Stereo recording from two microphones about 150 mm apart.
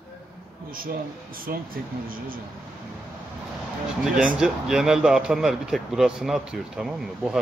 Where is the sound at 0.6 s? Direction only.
75° right (ahead or behind).